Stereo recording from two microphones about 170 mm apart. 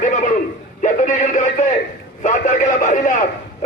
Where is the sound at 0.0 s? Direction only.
45° left (ahead or behind).